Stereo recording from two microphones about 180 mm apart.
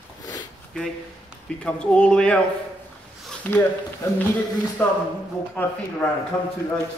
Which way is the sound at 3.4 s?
10° left (ahead or behind).